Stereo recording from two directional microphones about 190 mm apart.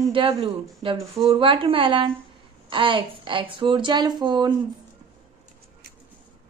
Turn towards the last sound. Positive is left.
turn(degrees=-25)  # may be behind; listen again after turning